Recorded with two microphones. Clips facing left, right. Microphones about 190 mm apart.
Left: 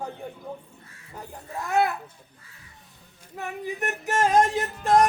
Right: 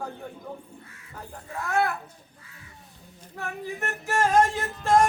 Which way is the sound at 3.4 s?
15° left (ahead or behind).